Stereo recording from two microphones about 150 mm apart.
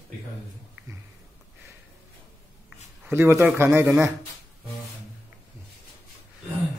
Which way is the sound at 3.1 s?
15° right (ahead or behind).